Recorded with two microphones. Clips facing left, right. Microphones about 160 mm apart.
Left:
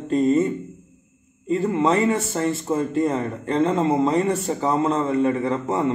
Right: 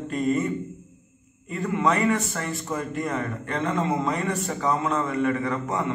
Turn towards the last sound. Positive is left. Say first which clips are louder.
# left 5 dB
turn(degrees=30)  # may be behind; listen again after turning